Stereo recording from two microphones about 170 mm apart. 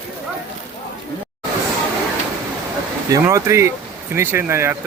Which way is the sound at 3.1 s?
20° right (ahead or behind).